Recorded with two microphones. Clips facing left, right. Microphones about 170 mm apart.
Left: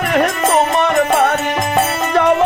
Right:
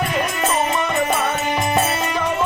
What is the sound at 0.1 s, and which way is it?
Music, 70° left (ahead or behind).